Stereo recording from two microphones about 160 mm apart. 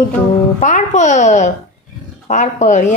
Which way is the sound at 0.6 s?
50° left (ahead or behind).